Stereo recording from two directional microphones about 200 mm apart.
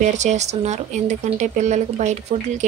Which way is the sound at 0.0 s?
35° right (ahead or behind).